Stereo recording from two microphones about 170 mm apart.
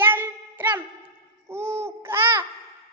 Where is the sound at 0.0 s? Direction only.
10° right (ahead or behind).